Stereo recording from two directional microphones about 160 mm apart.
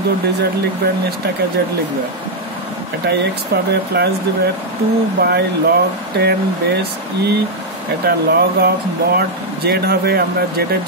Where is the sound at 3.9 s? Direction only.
90° right.